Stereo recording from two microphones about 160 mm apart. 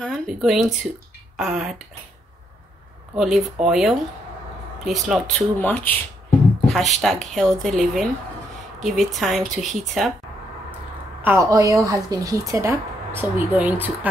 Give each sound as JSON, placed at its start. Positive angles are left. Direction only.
{"t": 0.0, "sound": "speech", "side_deg": 0}
{"t": 3.2, "sound": "speech", "side_deg": -5}
{"t": 11.2, "sound": "a woman's voice", "side_deg": -20}